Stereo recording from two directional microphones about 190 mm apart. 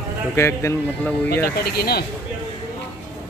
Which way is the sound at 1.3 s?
55° left (ahead or behind).